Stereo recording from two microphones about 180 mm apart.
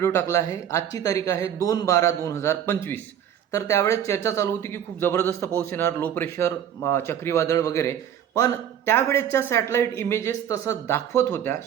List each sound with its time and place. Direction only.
0.0 s speech: 15° left (ahead or behind)